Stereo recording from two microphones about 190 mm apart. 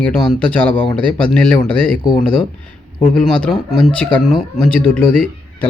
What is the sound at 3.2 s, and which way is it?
Speech, centre (ahead or behind).